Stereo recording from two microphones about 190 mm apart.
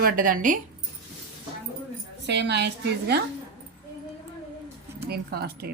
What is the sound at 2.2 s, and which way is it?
Speech, 65° right (ahead or behind).